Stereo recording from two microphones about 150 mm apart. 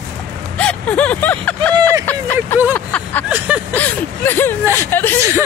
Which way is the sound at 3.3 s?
10° right (ahead or behind).